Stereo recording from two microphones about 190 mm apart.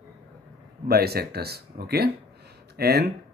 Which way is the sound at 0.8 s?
55° right (ahead or behind).